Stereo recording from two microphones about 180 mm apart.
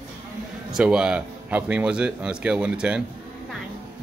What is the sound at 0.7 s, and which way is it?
A man's voice, 5° right (ahead or behind).